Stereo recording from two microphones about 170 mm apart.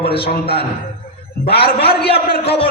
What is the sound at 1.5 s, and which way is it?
Speech, 70° left (ahead or behind).